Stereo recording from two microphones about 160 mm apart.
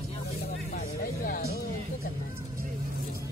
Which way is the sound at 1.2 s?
60° left (ahead or behind).